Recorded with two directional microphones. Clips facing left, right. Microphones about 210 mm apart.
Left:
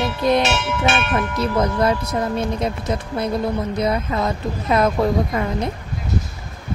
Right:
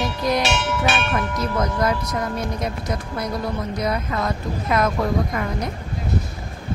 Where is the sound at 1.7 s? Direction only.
25° left (ahead or behind).